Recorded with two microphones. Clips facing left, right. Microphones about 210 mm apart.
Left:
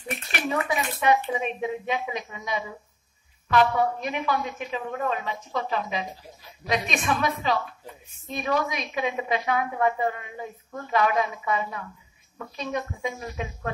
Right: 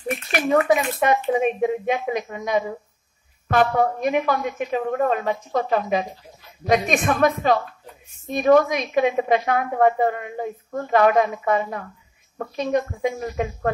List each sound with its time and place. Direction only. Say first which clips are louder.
0.5 s a woman's voice: right 9 dB; 50° right (ahead or behind)